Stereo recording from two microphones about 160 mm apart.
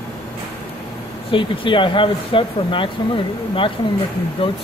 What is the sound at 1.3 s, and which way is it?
Speech, 30° left (ahead or behind).